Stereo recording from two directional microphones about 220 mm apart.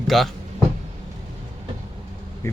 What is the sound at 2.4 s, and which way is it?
Speech, 10° left (ahead or behind).